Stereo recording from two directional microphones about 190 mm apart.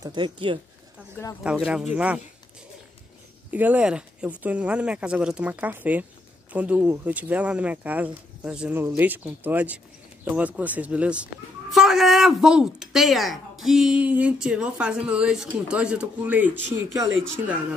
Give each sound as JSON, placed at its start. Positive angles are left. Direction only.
{"t": 0.0, "sound": "speech", "side_deg": -25}
{"t": 1.4, "sound": "a woman's voice", "side_deg": -5}
{"t": 3.5, "sound": "a woman's voice", "side_deg": -10}
{"t": 16.7, "sound": "speech", "side_deg": -15}